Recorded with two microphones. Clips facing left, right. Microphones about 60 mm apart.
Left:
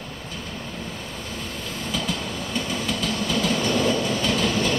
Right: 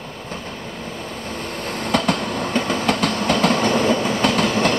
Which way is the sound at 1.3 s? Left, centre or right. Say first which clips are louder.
Right 6 dB; right.